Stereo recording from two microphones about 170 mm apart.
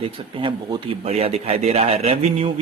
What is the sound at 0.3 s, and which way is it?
Speech, 30° right (ahead or behind).